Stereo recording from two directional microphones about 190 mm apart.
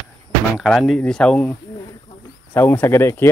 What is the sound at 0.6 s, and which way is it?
Speech, centre (ahead or behind).